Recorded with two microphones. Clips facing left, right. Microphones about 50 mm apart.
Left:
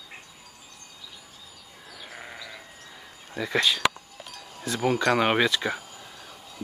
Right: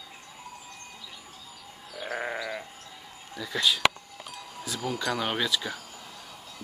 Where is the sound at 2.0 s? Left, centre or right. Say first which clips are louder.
Right 10 dB; right.